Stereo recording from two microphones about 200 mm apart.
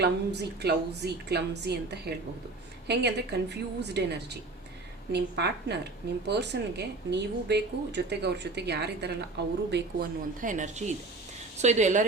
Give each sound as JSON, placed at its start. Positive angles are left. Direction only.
{"t": 0.0, "sound": "speech", "side_deg": -55}
{"t": 10.4, "sound": "speech", "side_deg": -40}